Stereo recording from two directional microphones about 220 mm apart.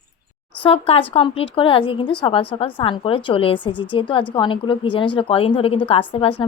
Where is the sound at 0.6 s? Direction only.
25° left (ahead or behind).